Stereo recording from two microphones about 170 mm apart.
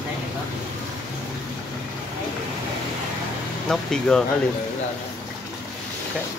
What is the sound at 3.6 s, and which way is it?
Speech, 5° left (ahead or behind).